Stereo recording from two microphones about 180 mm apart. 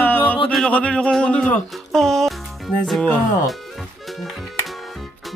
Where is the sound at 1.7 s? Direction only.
Centre (ahead or behind).